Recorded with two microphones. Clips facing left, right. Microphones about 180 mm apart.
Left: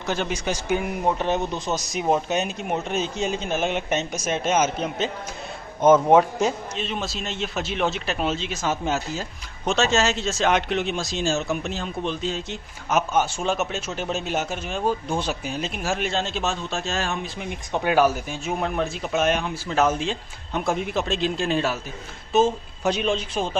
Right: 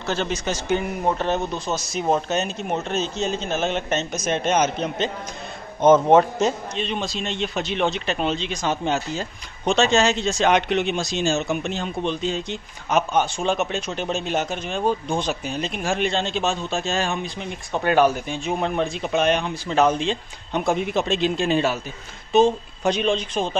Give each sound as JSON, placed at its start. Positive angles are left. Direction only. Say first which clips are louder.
{"t": 0.0, "sound": "a man's voice", "louder": "right 1 dB", "side_deg": 15}